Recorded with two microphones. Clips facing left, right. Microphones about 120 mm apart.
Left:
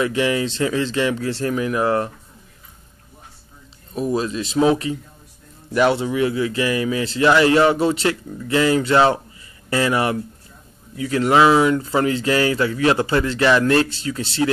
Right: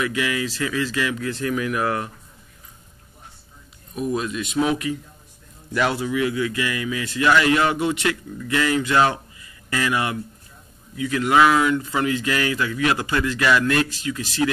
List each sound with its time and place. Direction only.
0.0 s speech: 30° left (ahead or behind)
3.9 s speech: 35° left (ahead or behind)